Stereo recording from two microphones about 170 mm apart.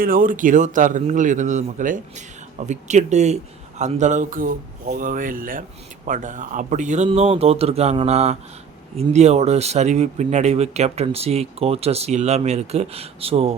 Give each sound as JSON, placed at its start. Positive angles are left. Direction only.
{"t": 0.0, "sound": "a man's voice", "side_deg": -55}